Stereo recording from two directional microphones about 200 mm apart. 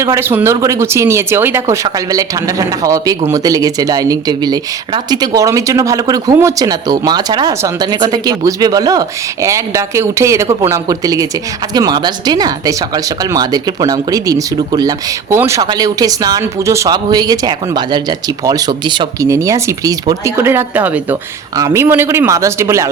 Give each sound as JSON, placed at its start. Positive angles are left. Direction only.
{"t": 0.0, "sound": "speech", "side_deg": -15}